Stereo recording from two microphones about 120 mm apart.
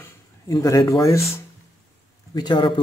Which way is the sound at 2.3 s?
35° left (ahead or behind).